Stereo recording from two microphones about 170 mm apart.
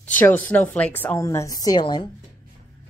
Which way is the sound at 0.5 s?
10° left (ahead or behind).